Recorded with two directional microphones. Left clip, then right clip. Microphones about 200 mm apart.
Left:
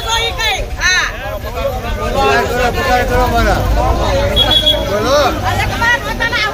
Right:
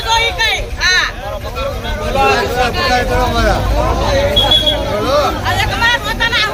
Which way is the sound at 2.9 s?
40° left (ahead or behind).